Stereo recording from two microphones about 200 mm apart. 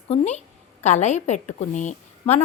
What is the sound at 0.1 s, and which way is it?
A woman's voice, 35° left (ahead or behind).